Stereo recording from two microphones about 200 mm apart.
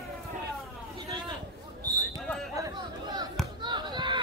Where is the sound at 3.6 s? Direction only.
20° right (ahead or behind).